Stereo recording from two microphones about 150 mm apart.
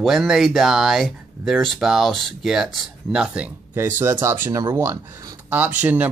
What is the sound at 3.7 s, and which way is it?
Speech, 15° right (ahead or behind).